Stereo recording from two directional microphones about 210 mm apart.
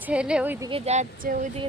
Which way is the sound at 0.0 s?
5° right (ahead or behind).